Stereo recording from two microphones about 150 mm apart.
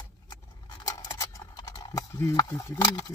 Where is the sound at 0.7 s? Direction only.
25° left (ahead or behind).